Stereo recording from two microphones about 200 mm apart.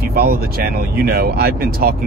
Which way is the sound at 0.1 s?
50° right (ahead or behind).